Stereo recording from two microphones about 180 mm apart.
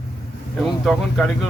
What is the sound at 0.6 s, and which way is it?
Speech, centre (ahead or behind).